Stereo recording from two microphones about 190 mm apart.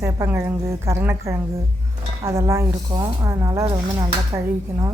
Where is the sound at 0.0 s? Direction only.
15° right (ahead or behind).